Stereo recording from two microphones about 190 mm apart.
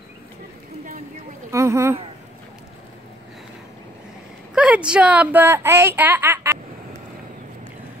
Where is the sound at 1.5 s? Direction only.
15° right (ahead or behind).